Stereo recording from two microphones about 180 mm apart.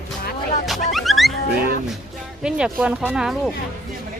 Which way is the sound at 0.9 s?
Centre (ahead or behind).